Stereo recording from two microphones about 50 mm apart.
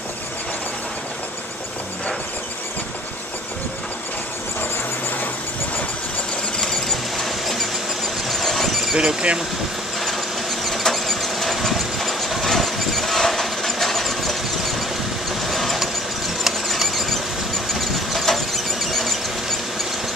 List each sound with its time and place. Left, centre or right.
6.6 s a sound: centre
8.3 s vehicle: centre
8.9 s speech: right
9.9 s vehicle: centre
16.4 s squeal: centre
17.7 s a sound: centre